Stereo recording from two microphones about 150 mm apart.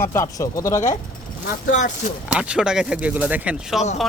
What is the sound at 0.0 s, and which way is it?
Speech, 20° left (ahead or behind).